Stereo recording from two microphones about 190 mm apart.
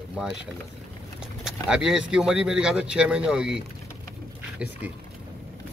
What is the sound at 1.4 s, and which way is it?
Speech, 5° right (ahead or behind).